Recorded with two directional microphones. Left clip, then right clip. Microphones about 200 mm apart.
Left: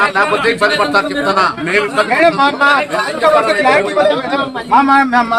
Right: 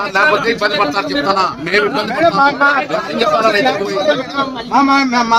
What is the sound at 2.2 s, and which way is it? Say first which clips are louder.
Speech: right 2 dB; 35° left (ahead or behind).